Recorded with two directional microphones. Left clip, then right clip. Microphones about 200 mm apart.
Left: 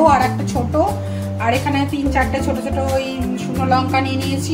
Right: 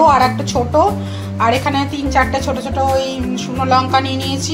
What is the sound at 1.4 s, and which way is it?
Speech, 15° right (ahead or behind).